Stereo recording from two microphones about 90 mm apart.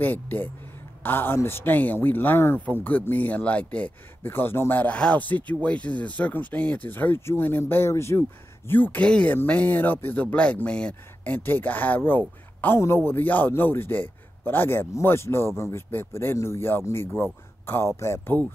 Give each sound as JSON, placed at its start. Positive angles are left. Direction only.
{"t": 0.0, "sound": "a man's voice", "side_deg": 20}